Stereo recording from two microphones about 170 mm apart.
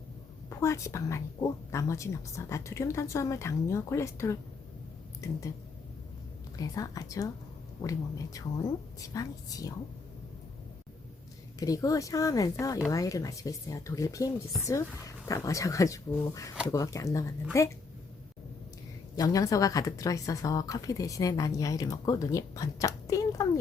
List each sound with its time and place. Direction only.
0.6 s speech: 15° left (ahead or behind)
6.6 s a woman's voice: 20° left (ahead or behind)
11.6 s a woman's voice: 20° left (ahead or behind)
19.1 s a woman's voice: 20° left (ahead or behind)